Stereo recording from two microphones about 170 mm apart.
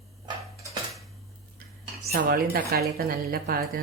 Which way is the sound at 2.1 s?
60° right (ahead or behind).